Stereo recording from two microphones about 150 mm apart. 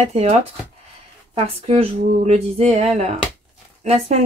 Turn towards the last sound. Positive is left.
turn(degrees=-40)  # may be behind; listen again after turning